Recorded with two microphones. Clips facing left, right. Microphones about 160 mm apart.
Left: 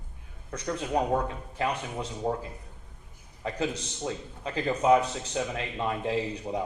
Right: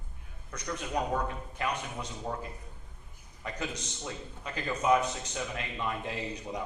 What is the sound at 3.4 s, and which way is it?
A man's voice, 30° left (ahead or behind).